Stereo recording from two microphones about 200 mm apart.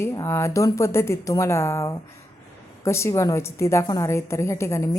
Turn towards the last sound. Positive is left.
turn(degrees=15)  # may be behind; listen again after turning